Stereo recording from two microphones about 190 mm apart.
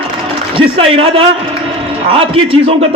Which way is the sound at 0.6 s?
30° right (ahead or behind).